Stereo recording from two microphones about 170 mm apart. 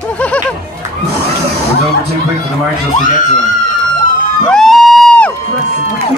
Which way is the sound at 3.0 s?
50° left (ahead or behind).